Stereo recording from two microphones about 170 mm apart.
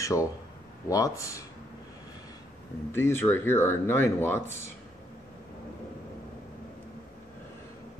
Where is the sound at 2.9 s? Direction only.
15° left (ahead or behind).